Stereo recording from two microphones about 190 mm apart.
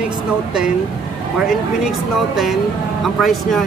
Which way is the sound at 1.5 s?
Centre (ahead or behind).